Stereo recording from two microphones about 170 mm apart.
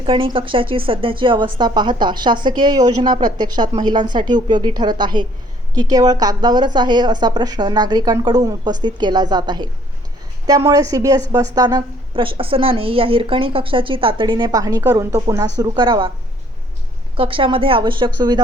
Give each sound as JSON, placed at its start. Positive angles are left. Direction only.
{"t": 0.0, "sound": "speech", "side_deg": -30}
{"t": 17.2, "sound": "a woman's voice", "side_deg": -30}